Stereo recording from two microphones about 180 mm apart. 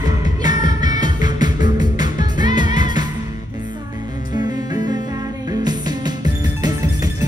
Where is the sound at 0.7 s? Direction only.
20° right (ahead or behind).